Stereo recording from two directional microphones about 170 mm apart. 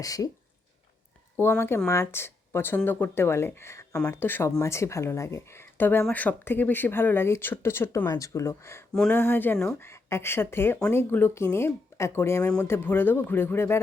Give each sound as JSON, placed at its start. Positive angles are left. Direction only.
{"t": 0.0, "sound": "speech", "side_deg": 20}
{"t": 1.4, "sound": "speech", "side_deg": 15}